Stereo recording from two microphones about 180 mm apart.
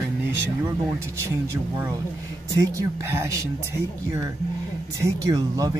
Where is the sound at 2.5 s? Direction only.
15° right (ahead or behind).